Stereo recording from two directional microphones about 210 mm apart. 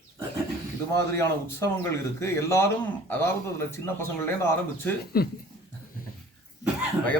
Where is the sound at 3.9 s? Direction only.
10° left (ahead or behind).